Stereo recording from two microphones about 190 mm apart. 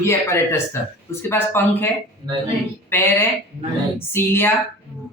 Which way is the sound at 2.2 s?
25° right (ahead or behind).